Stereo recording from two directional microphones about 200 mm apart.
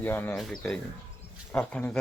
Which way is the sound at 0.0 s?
10° left (ahead or behind).